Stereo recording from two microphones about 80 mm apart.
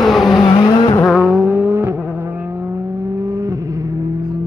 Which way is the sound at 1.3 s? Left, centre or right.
Right.